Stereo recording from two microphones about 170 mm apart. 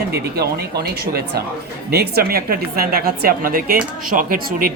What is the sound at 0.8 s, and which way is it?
A woman's voice, 70° right (ahead or behind).